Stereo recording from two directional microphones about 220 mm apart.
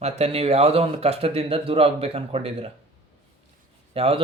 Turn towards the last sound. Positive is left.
turn(degrees=-25)  # may be behind; listen again after turning